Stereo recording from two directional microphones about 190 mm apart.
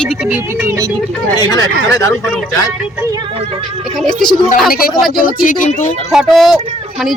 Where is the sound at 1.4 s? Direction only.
20° left (ahead or behind).